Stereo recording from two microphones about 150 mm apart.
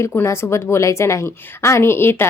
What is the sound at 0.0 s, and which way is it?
A woman's voice, 15° left (ahead or behind).